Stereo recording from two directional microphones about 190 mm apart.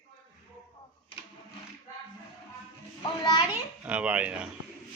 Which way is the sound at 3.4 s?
5° right (ahead or behind).